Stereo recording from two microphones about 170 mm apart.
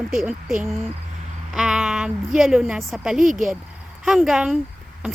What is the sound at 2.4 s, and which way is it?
Speech, 5° right (ahead or behind).